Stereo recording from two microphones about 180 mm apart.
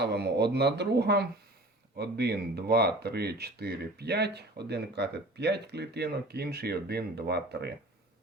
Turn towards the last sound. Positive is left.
turn(degrees=-65)  # may be behind; listen again after turning